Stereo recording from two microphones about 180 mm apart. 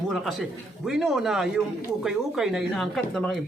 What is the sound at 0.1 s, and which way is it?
A man's voice, centre (ahead or behind).